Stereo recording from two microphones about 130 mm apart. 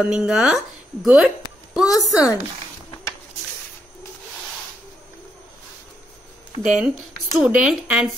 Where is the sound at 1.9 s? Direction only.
25° left (ahead or behind).